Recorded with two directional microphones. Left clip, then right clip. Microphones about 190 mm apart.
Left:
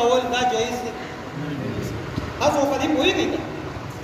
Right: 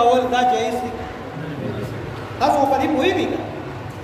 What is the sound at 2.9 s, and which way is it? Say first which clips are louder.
Speech: right 1 dB; 20° right (ahead or behind).